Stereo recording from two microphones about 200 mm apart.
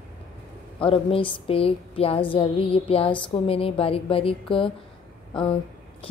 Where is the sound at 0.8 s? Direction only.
25° left (ahead or behind).